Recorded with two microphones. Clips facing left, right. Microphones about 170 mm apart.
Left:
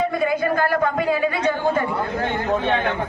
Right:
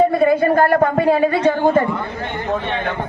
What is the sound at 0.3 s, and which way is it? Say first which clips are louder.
A woman's voice: right 6 dB; 50° right (ahead or behind).